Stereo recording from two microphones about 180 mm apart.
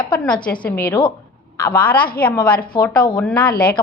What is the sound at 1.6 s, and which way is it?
A woman's voice, 10° left (ahead or behind).